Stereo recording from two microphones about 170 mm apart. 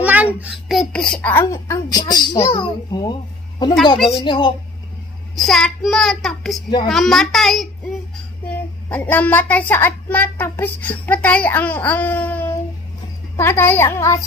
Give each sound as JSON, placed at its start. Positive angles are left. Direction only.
{"t": 0.0, "sound": "a woman's voice", "side_deg": -10}
{"t": 4.1, "sound": "speech", "side_deg": 30}
{"t": 5.3, "sound": "a child's voice", "side_deg": 0}
{"t": 8.8, "sound": "a woman's voice", "side_deg": 10}